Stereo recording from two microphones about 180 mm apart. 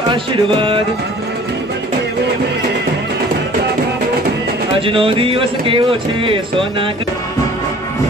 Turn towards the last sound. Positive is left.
turn(degrees=-30)  # may be behind; listen again after turning